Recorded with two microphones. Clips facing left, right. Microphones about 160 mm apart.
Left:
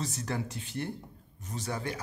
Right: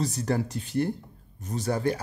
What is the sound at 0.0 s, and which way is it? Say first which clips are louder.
Speech: right 7 dB; 35° right (ahead or behind).